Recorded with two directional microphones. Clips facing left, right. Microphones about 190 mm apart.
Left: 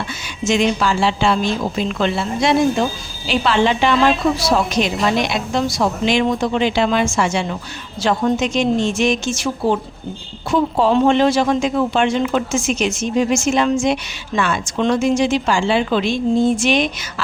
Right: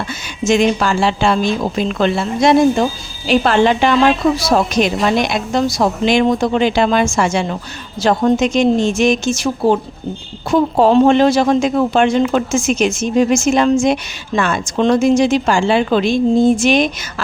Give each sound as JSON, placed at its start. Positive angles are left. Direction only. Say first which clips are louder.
{"t": 0.4, "sound": "speech", "louder": "right 3 dB", "side_deg": -50}